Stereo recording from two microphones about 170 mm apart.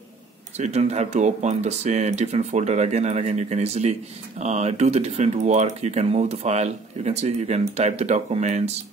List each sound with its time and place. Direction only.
0.6 s speech: 40° right (ahead or behind)